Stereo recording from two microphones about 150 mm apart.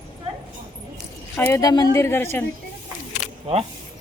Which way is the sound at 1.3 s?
15° left (ahead or behind).